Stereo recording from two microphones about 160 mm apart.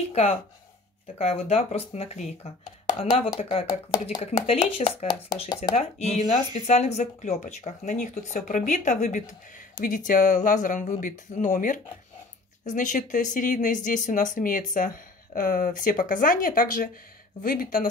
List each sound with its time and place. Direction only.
0.1 s speech: 45° left (ahead or behind); by 17.8 s 60° left (ahead or behind)